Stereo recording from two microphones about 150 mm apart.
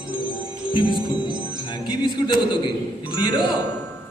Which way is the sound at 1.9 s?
30° left (ahead or behind).